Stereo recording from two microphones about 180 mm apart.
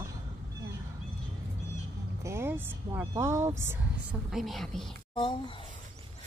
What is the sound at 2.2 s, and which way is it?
Speech, 15° right (ahead or behind).